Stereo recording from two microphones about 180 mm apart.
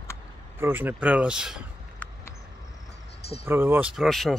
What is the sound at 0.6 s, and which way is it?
Speech, 10° right (ahead or behind).